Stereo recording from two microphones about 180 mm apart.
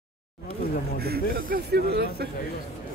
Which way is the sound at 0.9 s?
60° right (ahead or behind).